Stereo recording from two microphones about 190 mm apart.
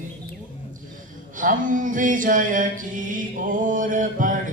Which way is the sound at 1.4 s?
45° right (ahead or behind).